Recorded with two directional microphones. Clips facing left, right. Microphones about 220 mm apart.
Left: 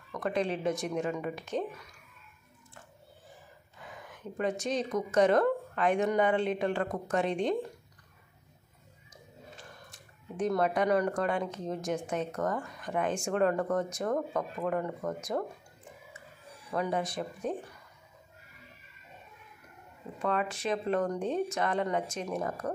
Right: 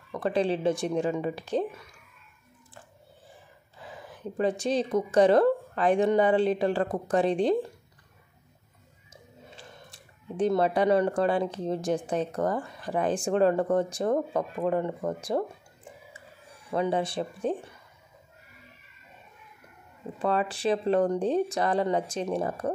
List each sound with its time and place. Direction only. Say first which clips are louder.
0.1 s speech: right 5 dB; 30° right (ahead or behind)
3.8 s speech: right 5 dB; 35° right (ahead or behind)
9.1 s speech: right 1 dB; 30° right (ahead or behind)
16.7 s speech: right 5 dB; 30° right (ahead or behind)
20.2 s speech: right 4 dB; 30° right (ahead or behind)